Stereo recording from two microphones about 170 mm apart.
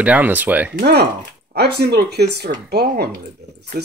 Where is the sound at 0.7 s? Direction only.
75° right (ahead or behind).